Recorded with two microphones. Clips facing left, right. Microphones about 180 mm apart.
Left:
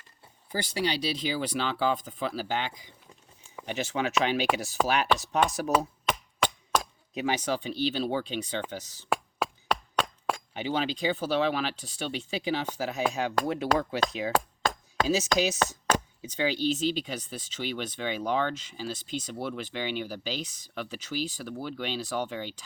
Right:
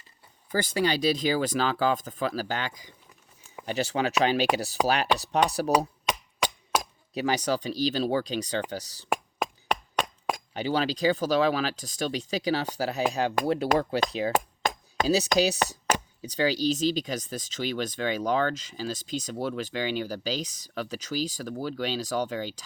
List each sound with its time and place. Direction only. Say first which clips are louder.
0.5 s speech: right 4 dB; 50° right (ahead or behind)
6.1 s a sound: left 1 dB; 15° right (ahead or behind)
7.1 s speech: right 2 dB; 35° right (ahead or behind)
9.0 s a sound: even; 15° right (ahead or behind)
10.5 s speech: right 4 dB; 35° right (ahead or behind)
14.3 s chop: even; 10° right (ahead or behind)
15.0 s speech: right 3 dB; 35° right (ahead or behind)
15.6 s chopping: even; 15° right (ahead or behind)
16.2 s speech: right 4 dB; 35° right (ahead or behind)